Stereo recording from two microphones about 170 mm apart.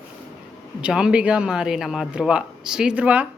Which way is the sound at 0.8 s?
5° right (ahead or behind).